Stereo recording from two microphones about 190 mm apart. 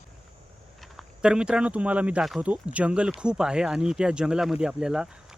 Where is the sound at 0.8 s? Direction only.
Centre (ahead or behind).